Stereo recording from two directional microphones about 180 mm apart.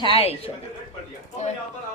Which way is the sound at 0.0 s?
30° left (ahead or behind).